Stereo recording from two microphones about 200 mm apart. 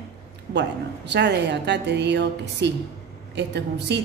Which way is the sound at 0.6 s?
60° right (ahead or behind).